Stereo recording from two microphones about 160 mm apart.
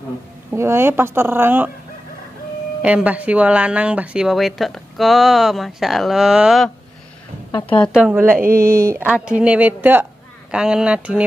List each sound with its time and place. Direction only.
0.5 s speech: 15° right (ahead or behind)
2.8 s speech: 10° right (ahead or behind)
7.9 s speech: 10° right (ahead or behind)